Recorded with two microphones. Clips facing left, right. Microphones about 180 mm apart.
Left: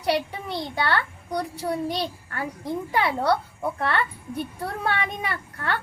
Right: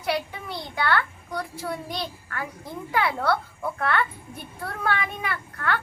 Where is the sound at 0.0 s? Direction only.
35° left (ahead or behind).